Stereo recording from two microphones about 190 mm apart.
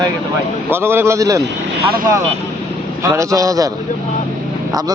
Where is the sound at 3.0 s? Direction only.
15° right (ahead or behind).